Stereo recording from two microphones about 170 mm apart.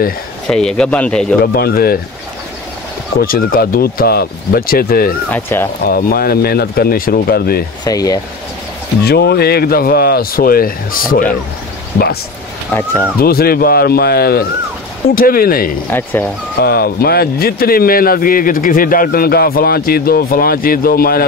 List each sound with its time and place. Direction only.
0.5 s speech: 5° left (ahead or behind)
1.4 s speech: 60° left (ahead or behind)
3.2 s speech: 60° left (ahead or behind)
5.3 s speech: 15° left (ahead or behind)
5.9 s speech: 60° left (ahead or behind)
7.8 s speech: 20° left (ahead or behind)
9.0 s speech: 70° left (ahead or behind); by 11.2 s 55° left (ahead or behind)
12.7 s speech: 10° left (ahead or behind)
13.2 s speech: 60° left (ahead or behind)
15.9 s speech: 10° left (ahead or behind)
16.5 s speech: 65° left (ahead or behind)